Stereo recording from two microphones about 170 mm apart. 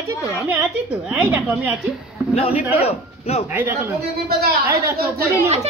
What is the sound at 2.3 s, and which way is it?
A man's voice, 35° left (ahead or behind).